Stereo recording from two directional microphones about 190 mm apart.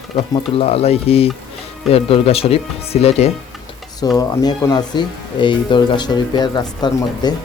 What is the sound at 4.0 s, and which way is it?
Speech, 20° left (ahead or behind).